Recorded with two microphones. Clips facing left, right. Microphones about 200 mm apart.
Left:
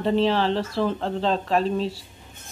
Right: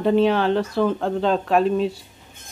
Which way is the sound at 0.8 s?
5° right (ahead or behind).